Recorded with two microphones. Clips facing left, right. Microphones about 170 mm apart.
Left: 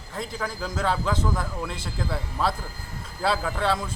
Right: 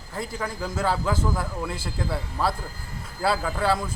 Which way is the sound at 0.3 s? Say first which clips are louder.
Right 1 dB; 5° right (ahead or behind).